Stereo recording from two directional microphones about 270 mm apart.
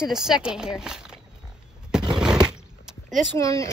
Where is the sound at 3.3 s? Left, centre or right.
Centre.